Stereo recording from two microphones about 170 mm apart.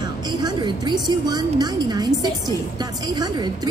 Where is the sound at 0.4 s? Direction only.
25° right (ahead or behind).